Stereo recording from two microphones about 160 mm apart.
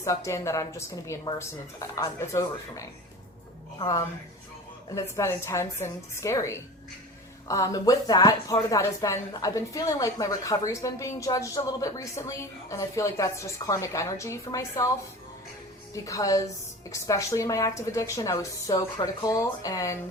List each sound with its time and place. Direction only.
0.0 s a woman's voice: 20° left (ahead or behind)
16.0 s speech: 20° left (ahead or behind)